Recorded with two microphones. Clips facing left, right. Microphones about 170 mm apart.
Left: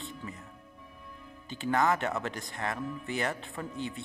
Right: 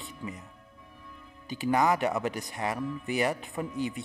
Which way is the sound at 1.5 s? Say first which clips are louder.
Right 2 dB; 15° right (ahead or behind).